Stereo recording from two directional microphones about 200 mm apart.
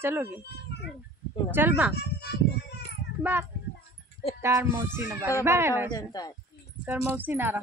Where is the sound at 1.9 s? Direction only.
55° left (ahead or behind).